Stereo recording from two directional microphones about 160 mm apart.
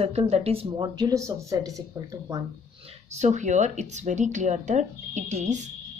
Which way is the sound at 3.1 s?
45° right (ahead or behind).